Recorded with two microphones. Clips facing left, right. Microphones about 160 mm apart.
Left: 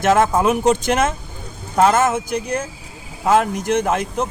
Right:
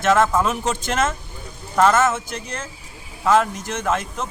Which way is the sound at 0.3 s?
15° left (ahead or behind).